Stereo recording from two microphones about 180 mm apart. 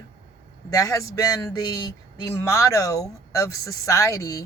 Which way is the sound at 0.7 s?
20° left (ahead or behind).